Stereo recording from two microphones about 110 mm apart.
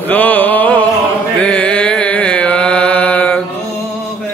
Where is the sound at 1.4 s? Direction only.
10° left (ahead or behind).